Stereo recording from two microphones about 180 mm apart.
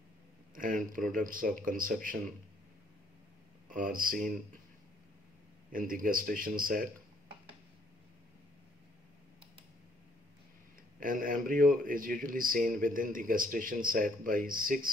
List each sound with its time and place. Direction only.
0.6 s speech: 50° right (ahead or behind)
3.6 s speech: 50° right (ahead or behind)
5.7 s speech: 50° right (ahead or behind)
11.0 s speech: 50° right (ahead or behind)